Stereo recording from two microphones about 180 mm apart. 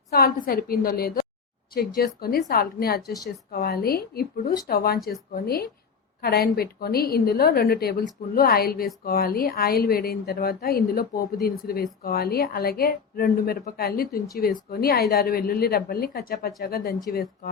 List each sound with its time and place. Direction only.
0.1 s speech: 55° left (ahead or behind)